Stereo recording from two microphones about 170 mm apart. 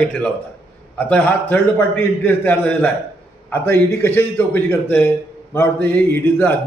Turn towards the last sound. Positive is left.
turn(degrees=10)  # may be behind; listen again after turning